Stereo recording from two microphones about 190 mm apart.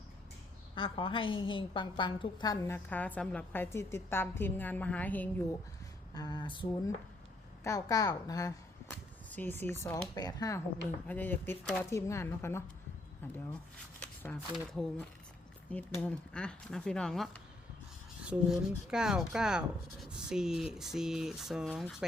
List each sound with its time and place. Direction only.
0.8 s a woman's voice: 30° left (ahead or behind); by 5.3 s 10° left (ahead or behind)
6.1 s a sound: 20° left (ahead or behind)
7.6 s a woman's voice: 15° left (ahead or behind)
14.0 s shuffling cards: 10° left (ahead or behind)
14.5 s speech: 5° left (ahead or behind)